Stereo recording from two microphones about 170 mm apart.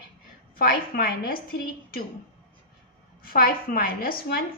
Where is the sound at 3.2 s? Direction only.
60° left (ahead or behind).